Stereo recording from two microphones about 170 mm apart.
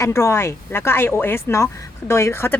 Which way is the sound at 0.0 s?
15° left (ahead or behind).